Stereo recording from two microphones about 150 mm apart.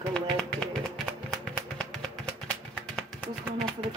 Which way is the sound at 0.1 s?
5° left (ahead or behind).